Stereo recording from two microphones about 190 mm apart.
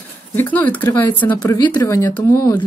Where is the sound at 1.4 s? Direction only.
20° left (ahead or behind).